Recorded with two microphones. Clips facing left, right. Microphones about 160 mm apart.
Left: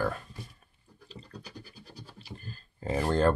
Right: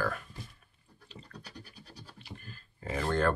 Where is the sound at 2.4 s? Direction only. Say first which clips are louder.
Left 5 dB; 30° left (ahead or behind).